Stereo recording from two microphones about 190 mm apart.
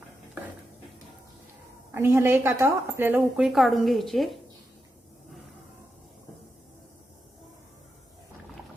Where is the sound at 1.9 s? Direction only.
15° right (ahead or behind).